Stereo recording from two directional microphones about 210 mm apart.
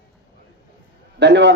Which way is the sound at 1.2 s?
55° right (ahead or behind).